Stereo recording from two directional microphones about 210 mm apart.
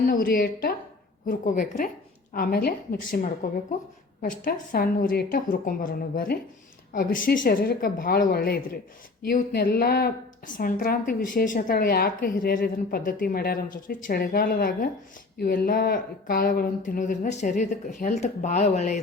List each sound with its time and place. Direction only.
0.0 s a woman's voice: 40° left (ahead or behind)